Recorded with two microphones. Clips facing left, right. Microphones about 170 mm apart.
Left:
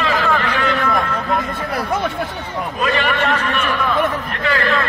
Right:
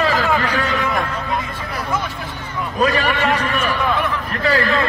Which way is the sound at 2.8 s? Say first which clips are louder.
Right 2 dB; 40° right (ahead or behind).